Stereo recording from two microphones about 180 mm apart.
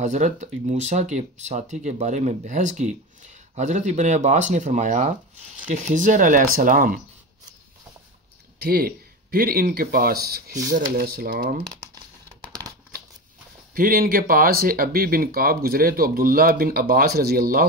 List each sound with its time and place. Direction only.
0.0 s speech: 40° right (ahead or behind)
8.5 s speech: 55° right (ahead or behind)
13.7 s speech: 55° right (ahead or behind)